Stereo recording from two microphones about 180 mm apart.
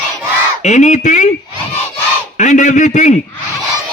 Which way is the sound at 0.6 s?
40° left (ahead or behind).